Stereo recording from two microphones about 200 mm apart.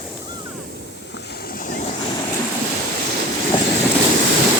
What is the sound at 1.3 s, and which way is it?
Vehicle, 50° left (ahead or behind).